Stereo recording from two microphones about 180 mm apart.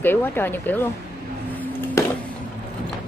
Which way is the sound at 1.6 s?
10° left (ahead or behind).